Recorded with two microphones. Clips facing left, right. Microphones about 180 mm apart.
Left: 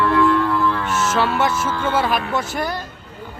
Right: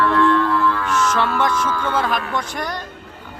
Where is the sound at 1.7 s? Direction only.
25° left (ahead or behind).